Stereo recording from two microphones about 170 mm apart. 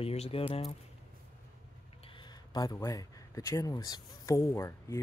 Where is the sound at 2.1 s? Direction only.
25° left (ahead or behind).